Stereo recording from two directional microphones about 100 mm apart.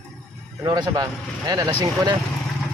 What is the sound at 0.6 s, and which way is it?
Speech, 40° right (ahead or behind).